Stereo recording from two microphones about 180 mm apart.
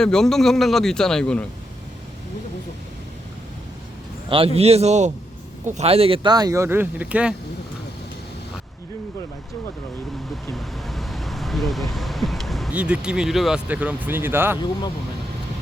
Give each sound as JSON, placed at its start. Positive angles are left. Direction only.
{"t": 0.0, "sound": "a man's voice", "side_deg": 5}
{"t": 4.3, "sound": "a man's voice", "side_deg": -30}
{"t": 10.5, "sound": "speech", "side_deg": 0}